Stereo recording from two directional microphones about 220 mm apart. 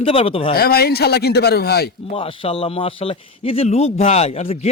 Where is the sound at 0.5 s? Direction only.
45° left (ahead or behind).